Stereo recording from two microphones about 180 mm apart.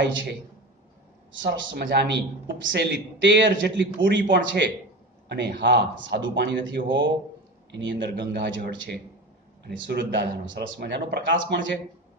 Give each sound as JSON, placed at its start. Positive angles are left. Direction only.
{"t": 1.5, "sound": "a man's voice", "side_deg": -75}
{"t": 5.3, "sound": "a man's voice", "side_deg": -70}